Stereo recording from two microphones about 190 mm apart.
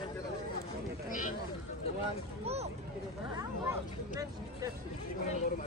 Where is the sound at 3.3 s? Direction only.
20° right (ahead or behind).